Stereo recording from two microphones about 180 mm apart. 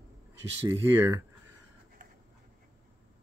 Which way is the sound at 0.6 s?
15° right (ahead or behind).